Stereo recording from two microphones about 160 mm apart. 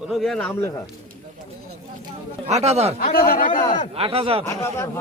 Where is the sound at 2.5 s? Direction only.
45° right (ahead or behind).